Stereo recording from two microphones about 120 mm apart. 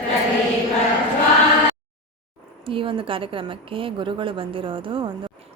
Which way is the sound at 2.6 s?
45° right (ahead or behind).